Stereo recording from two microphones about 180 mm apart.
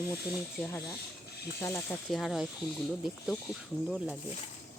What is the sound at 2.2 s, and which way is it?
Speech, centre (ahead or behind).